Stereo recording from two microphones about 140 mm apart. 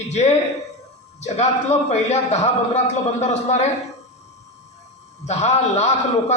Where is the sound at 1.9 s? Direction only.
55° left (ahead or behind).